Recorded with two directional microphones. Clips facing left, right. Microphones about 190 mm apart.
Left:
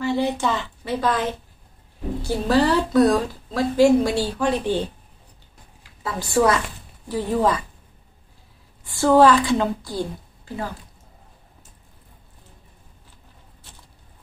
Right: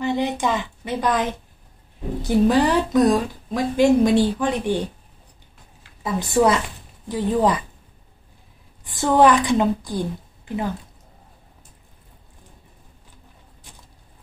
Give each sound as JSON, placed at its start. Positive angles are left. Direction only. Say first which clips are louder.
{"t": 0.0, "sound": "a woman's voice", "louder": "even", "side_deg": -20}
{"t": 6.0, "sound": "a woman's voice", "louder": "right 1 dB", "side_deg": -20}
{"t": 8.8, "sound": "a woman's voice", "louder": "left 1 dB", "side_deg": -20}
{"t": 13.7, "sound": "a sound", "louder": "right 2 dB", "side_deg": -15}